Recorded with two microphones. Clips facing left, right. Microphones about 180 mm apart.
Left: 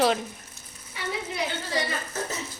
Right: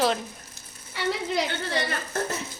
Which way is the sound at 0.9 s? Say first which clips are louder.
Right 6 dB; 90° right.